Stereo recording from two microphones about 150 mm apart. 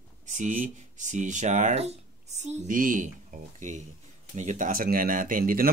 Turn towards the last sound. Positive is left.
turn(degrees=-70)  # may be behind; listen again after turning